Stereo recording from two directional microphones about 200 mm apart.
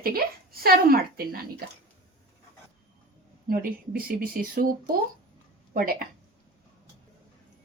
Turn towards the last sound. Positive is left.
turn(degrees=-45)  # may be behind; listen again after turning